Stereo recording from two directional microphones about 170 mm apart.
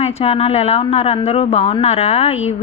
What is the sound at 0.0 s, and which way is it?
Speech, 35° left (ahead or behind).